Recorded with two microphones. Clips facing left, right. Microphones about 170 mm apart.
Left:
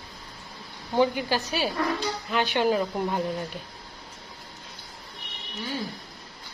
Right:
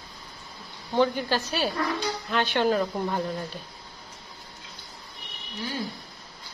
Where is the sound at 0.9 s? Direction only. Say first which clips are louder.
Even; 15° left (ahead or behind).